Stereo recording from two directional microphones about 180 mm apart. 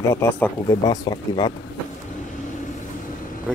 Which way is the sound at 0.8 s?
20° left (ahead or behind).